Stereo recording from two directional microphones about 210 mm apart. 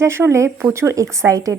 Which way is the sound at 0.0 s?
10° right (ahead or behind).